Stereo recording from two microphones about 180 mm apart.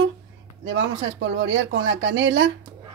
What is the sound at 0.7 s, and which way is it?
Speech, 85° right.